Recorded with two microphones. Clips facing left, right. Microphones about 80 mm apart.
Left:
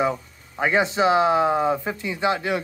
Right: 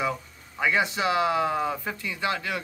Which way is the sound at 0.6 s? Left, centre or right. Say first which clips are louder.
Left 5 dB; left.